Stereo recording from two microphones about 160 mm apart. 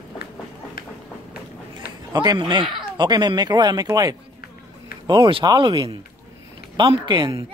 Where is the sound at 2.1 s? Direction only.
30° right (ahead or behind).